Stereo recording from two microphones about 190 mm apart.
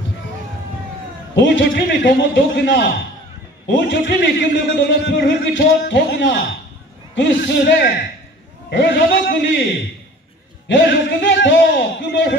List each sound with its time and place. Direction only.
1.3 s a man's voice: 70° left (ahead or behind)
3.9 s a man's voice: 65° left (ahead or behind)
10.7 s a man's voice: 70° left (ahead or behind)